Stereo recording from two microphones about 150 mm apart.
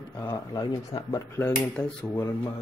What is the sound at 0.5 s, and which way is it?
Speech, 25° left (ahead or behind).